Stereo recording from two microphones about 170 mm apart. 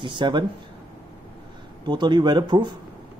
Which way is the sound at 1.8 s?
25° right (ahead or behind).